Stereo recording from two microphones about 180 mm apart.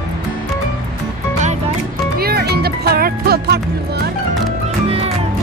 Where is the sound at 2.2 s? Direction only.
60° right (ahead or behind).